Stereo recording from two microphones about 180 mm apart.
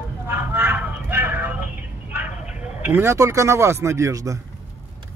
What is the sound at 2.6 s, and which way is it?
Speech, 10° right (ahead or behind).